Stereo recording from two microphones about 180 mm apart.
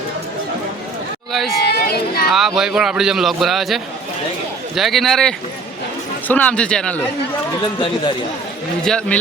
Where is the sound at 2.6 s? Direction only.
5° right (ahead or behind).